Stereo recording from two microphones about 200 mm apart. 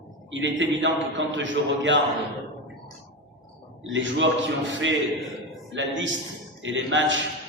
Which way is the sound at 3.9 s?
70° right (ahead or behind).